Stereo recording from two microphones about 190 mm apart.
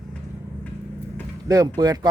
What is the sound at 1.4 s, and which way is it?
Speech, 20° right (ahead or behind).